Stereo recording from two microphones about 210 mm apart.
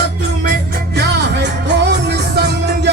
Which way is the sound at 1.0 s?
55° right (ahead or behind).